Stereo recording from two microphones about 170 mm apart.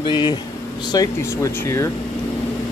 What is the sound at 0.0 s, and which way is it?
Speech, 25° left (ahead or behind).